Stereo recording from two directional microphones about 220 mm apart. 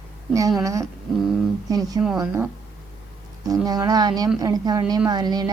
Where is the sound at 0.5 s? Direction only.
15° right (ahead or behind).